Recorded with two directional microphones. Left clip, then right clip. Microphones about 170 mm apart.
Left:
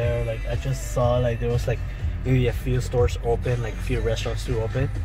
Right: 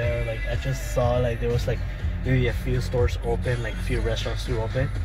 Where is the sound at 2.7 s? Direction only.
35° left (ahead or behind).